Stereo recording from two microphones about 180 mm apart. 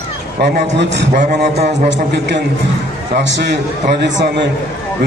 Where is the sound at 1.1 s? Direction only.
40° right (ahead or behind).